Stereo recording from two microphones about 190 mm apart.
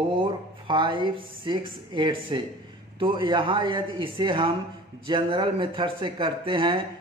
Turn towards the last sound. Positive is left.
turn(degrees=-25)  # may be behind; listen again after turning